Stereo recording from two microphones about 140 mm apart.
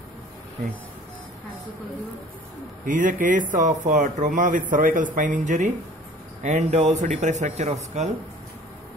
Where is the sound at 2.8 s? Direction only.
70° right (ahead or behind).